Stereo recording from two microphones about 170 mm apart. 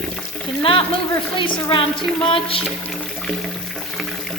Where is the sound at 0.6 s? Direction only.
35° left (ahead or behind).